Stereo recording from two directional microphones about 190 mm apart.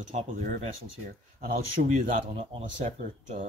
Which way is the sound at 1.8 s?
45° right (ahead or behind).